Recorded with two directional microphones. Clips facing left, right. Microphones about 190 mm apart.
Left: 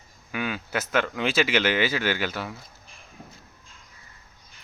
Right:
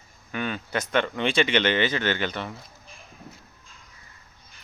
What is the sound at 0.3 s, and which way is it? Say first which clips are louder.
Speech: even; 5° left (ahead or behind).